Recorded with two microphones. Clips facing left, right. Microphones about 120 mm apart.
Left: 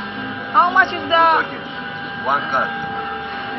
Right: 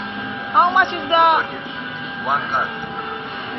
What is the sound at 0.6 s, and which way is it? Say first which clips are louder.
Speech: even; 20° right (ahead or behind).